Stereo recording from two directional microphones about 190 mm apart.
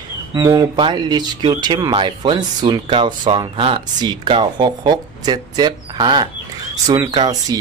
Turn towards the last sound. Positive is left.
turn(degrees=-20)  # may be behind; listen again after turning